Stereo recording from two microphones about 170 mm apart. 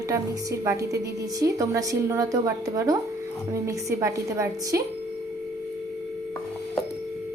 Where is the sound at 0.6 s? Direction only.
20° right (ahead or behind).